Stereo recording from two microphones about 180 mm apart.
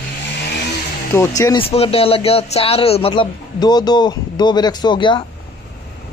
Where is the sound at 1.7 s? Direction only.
35° left (ahead or behind).